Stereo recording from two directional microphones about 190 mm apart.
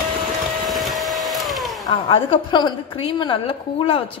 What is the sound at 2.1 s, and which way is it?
A woman's voice, 25° left (ahead or behind).